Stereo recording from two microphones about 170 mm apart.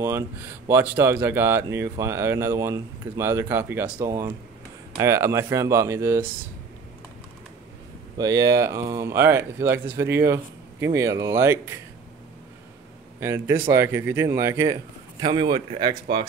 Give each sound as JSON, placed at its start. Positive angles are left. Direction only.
{"t": 0.7, "sound": "speech", "side_deg": -15}
{"t": 8.2, "sound": "speech", "side_deg": -20}
{"t": 13.2, "sound": "speech", "side_deg": -15}